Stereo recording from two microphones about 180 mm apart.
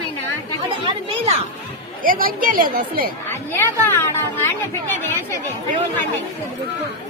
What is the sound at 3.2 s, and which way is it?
Speech, 10° left (ahead or behind).